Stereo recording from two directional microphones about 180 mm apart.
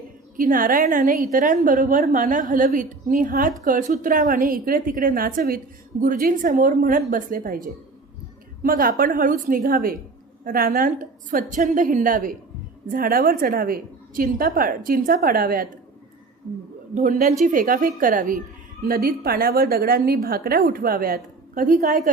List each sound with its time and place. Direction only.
0.3 s a woman's voice: 50° right (ahead or behind)
16.9 s a woman's voice: 45° right (ahead or behind)